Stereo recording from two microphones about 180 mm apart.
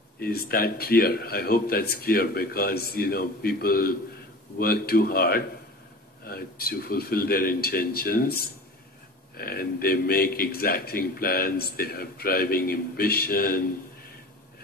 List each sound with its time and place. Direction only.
0.2 s a man's voice: 55° left (ahead or behind)